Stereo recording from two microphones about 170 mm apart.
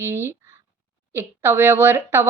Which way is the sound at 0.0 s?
15° right (ahead or behind).